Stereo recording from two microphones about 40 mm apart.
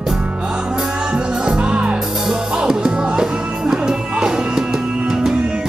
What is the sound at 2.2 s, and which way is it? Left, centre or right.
Music, centre.